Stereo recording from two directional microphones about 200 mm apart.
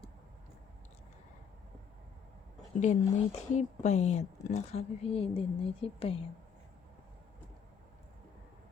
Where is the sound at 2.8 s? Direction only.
35° left (ahead or behind).